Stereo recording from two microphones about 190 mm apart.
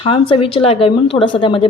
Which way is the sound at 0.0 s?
30° left (ahead or behind).